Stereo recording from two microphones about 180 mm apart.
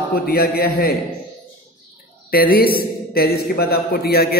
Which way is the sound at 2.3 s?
55° left (ahead or behind).